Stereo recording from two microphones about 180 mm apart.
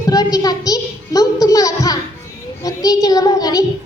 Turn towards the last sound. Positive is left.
turn(degrees=20)  # may be behind; listen again after turning